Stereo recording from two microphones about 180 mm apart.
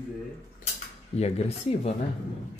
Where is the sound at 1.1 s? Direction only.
35° left (ahead or behind).